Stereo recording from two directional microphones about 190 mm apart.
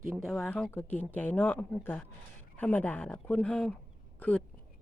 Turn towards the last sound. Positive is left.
turn(degrees=10)  # may be behind; listen again after turning